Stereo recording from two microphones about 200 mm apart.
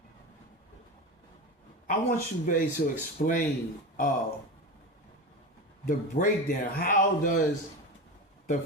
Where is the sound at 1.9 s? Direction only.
45° left (ahead or behind).